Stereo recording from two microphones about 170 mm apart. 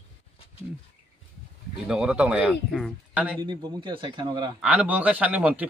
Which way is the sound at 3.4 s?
25° right (ahead or behind).